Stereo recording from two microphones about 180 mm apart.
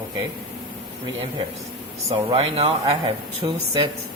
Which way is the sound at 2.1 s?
30° right (ahead or behind).